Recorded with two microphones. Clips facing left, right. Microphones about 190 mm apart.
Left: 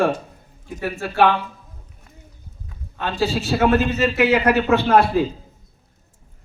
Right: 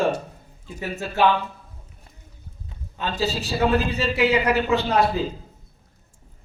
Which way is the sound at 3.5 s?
65° left (ahead or behind).